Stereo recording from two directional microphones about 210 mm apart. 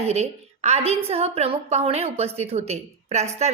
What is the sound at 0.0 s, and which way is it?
A woman's voice, 30° right (ahead or behind).